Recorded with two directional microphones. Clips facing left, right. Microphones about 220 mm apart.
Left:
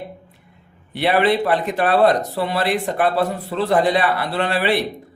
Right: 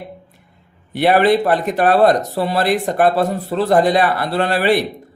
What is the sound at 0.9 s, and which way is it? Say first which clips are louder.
Speech: right 4 dB; 45° right (ahead or behind).